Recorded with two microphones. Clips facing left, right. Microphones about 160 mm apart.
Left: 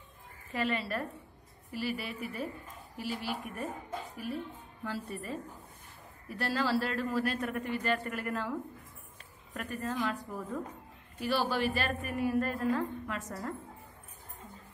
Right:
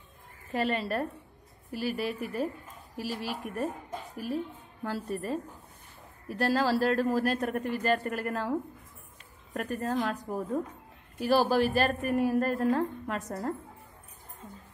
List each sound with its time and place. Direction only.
0.5 s a woman's voice: 40° right (ahead or behind)
4.8 s a woman's voice: 40° right (ahead or behind)